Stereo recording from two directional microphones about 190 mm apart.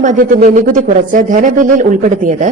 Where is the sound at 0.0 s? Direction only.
45° right (ahead or behind).